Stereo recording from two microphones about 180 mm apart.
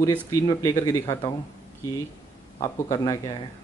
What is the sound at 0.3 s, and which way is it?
Speech, 20° left (ahead or behind).